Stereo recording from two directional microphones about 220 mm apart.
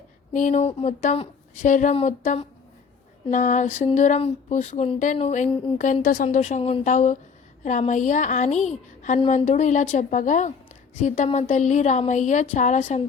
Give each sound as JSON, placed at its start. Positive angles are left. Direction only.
{"t": 0.3, "sound": "speech", "side_deg": 35}